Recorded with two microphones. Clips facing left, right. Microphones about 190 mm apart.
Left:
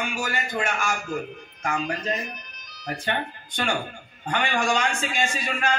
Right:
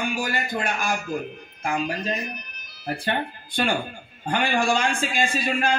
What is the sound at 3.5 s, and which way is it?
A man's voice, 35° right (ahead or behind).